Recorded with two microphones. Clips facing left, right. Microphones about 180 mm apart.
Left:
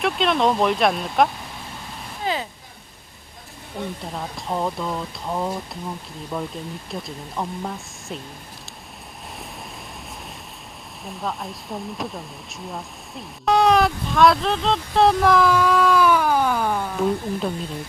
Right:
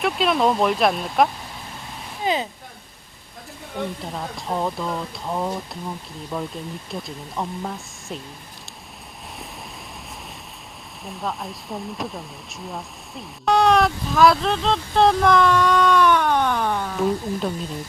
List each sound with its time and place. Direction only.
0.0 s speech: 5° right (ahead or behind)
2.2 s speech: 20° right (ahead or behind)
4.0 s speech: centre (ahead or behind)
11.0 s speech: centre (ahead or behind)